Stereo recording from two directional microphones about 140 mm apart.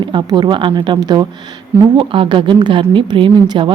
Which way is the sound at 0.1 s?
30° right (ahead or behind).